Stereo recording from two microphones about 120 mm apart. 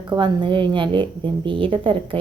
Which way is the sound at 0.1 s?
45° right (ahead or behind).